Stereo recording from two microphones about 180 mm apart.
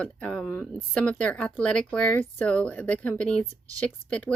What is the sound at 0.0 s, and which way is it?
Speech, 5° left (ahead or behind).